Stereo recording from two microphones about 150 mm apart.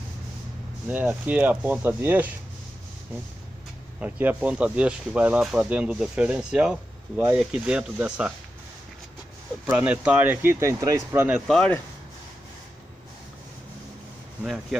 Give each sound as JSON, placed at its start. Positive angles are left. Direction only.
{"t": 0.8, "sound": "speech", "side_deg": -10}
{"t": 4.0, "sound": "speech", "side_deg": -10}
{"t": 9.7, "sound": "speech", "side_deg": -10}
{"t": 11.4, "sound": "speech", "side_deg": 5}
{"t": 14.4, "sound": "speech", "side_deg": -5}